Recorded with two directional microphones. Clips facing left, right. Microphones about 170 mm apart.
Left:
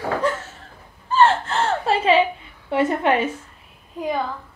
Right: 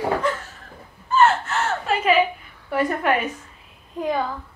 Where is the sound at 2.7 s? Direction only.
25° left (ahead or behind).